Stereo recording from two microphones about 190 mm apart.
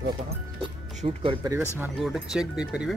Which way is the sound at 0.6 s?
25° right (ahead or behind).